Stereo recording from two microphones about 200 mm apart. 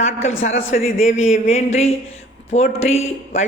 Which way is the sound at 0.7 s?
40° left (ahead or behind).